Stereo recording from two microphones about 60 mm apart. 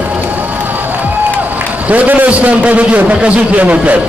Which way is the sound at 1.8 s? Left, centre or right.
Right.